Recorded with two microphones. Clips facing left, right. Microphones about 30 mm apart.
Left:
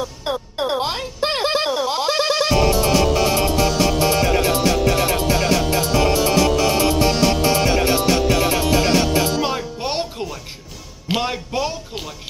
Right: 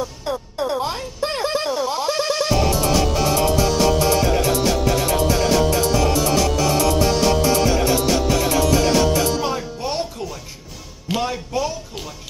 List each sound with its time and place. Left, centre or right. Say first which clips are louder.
0.2 s music: left 3 dB; left
1.7 s music: left 2 dB; centre
4.0 s music: left 1 dB; centre
9.8 s music: left 1 dB; left